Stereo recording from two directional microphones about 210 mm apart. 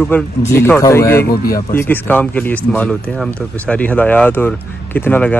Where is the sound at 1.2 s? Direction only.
45° left (ahead or behind).